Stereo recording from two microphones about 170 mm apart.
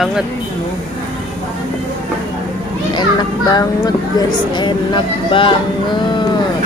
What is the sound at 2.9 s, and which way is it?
A child's voice, 25° left (ahead or behind).